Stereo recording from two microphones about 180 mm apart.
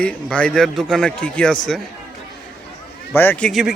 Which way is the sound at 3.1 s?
10° left (ahead or behind).